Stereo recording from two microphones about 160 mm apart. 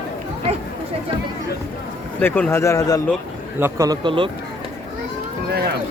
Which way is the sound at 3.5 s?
15° right (ahead or behind).